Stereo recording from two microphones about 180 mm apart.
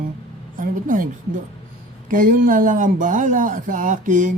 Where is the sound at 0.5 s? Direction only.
50° right (ahead or behind).